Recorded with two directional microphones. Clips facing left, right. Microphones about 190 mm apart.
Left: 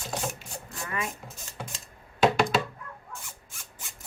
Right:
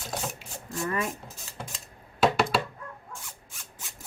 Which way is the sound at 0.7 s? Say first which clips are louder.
Right 5 dB; 40° right (ahead or behind).